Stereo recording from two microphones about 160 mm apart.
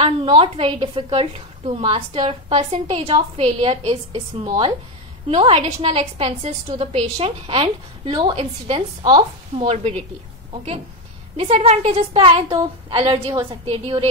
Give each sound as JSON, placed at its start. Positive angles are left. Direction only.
{"t": 0.0, "sound": "a woman's voice", "side_deg": -35}